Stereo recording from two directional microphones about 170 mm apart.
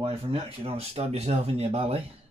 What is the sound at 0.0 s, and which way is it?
Speech, 35° right (ahead or behind).